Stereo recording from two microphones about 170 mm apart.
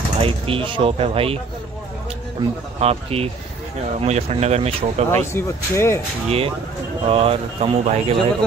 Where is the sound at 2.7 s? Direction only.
35° right (ahead or behind).